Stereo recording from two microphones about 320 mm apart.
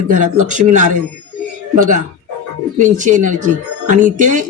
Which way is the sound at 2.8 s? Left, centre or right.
Right.